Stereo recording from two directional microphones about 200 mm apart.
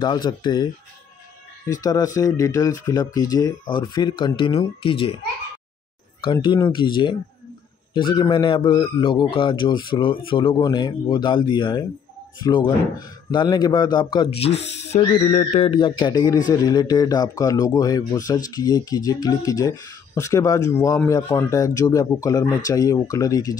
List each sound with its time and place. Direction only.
0.0 s a man's voice: 20° left (ahead or behind)
1.7 s a man's voice: 20° left (ahead or behind)
6.2 s a man's voice: 25° left (ahead or behind)
14.5 s speech: 60° left (ahead or behind)
14.8 s speech: 30° left (ahead or behind); by 23.5 s 15° left (ahead or behind)